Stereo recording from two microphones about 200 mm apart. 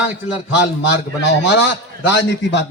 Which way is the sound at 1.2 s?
60° left (ahead or behind).